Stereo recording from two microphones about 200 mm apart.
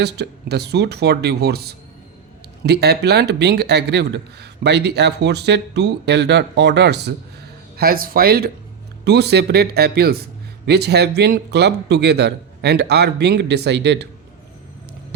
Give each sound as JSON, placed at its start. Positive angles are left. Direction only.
{"t": 0.0, "sound": "speech", "side_deg": -55}
{"t": 7.8, "sound": "speech", "side_deg": -45}